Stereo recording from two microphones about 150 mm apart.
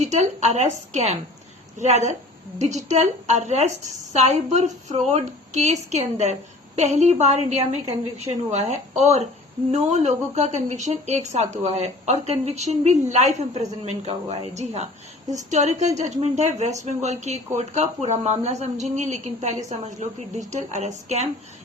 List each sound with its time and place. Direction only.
0.0 s speech: 50° right (ahead or behind)
14.1 s a woman's voice: 35° right (ahead or behind)
14.5 s speech: 45° right (ahead or behind)